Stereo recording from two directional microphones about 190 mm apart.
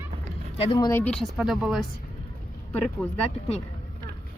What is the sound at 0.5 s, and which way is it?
Speech, 30° left (ahead or behind).